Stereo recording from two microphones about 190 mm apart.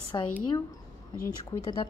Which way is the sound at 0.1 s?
20° left (ahead or behind).